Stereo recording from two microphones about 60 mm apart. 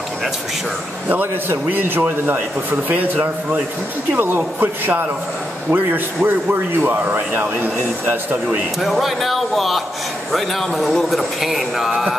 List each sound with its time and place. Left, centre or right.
1.0 s a man's voice: right
4.2 s a man's voice: right
8.8 s a man's voice: centre